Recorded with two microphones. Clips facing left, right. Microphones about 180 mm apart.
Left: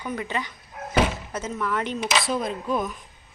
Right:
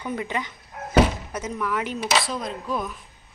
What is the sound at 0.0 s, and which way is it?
Speech, 20° right (ahead or behind).